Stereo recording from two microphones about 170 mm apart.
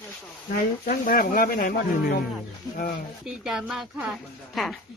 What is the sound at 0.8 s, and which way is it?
Speech, 55° left (ahead or behind).